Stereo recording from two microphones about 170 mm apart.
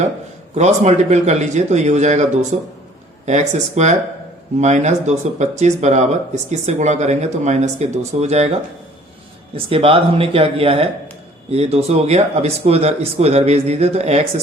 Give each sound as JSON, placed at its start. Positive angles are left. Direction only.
{"t": 0.5, "sound": "speech", "side_deg": -40}
{"t": 9.6, "sound": "speech", "side_deg": -35}